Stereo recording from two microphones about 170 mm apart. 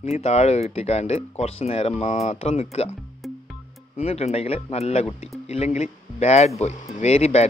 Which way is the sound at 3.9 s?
40° left (ahead or behind).